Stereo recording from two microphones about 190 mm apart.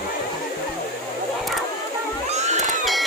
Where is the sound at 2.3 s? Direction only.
35° right (ahead or behind).